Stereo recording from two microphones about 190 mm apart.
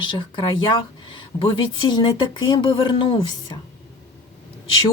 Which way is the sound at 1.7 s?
25° left (ahead or behind).